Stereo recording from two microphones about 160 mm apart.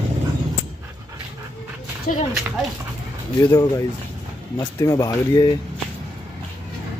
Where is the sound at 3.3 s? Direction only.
20° left (ahead or behind).